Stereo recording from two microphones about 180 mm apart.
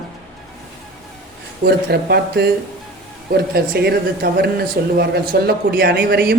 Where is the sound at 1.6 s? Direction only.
60° right (ahead or behind).